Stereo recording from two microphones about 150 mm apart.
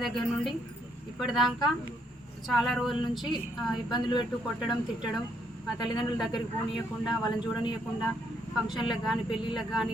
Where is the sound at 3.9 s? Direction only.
30° left (ahead or behind).